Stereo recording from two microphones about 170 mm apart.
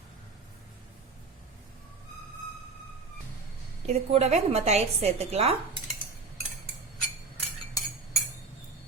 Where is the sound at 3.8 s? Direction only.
40° right (ahead or behind).